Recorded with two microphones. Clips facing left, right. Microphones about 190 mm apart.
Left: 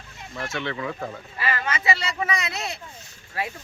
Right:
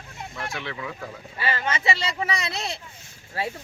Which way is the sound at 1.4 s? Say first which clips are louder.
Right 1 dB; 30° right (ahead or behind).